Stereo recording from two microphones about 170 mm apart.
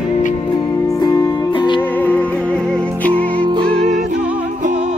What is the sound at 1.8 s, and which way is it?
Music, 10° left (ahead or behind).